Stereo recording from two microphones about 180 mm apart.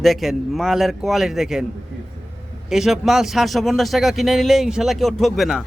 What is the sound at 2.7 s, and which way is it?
Speech, centre (ahead or behind).